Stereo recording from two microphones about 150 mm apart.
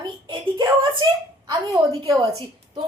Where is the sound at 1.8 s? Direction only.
35° right (ahead or behind).